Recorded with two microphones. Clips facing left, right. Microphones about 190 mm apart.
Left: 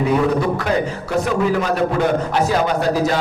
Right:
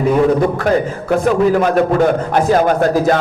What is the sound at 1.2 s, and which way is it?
A man's voice, 50° right (ahead or behind).